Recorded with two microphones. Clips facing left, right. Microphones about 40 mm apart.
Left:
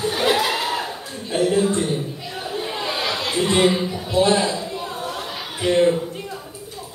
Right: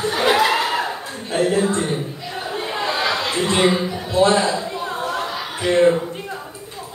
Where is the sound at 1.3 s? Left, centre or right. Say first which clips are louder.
Even; right.